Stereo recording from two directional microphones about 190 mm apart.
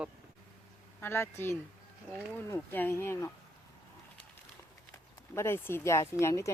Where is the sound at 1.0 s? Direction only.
15° left (ahead or behind).